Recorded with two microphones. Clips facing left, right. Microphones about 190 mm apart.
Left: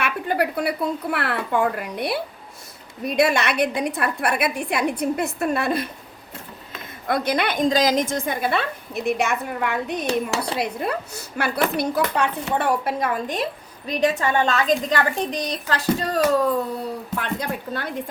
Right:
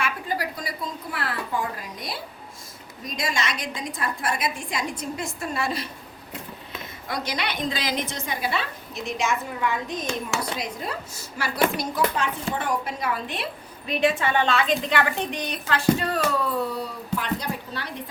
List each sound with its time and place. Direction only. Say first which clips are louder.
0.0 s a woman's voice: left 5 dB; 65° left (ahead or behind)
7.1 s a woman's voice: left 8 dB; 55° left (ahead or behind)